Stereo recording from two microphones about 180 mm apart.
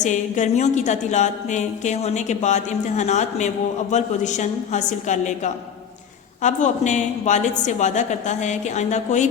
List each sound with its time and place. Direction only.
0.0 s a woman's voice: 40° left (ahead or behind)